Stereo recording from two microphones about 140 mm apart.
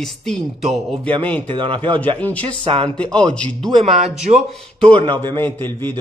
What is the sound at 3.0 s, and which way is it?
A man's voice, 5° left (ahead or behind).